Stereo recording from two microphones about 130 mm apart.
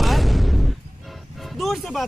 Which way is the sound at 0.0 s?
Centre (ahead or behind).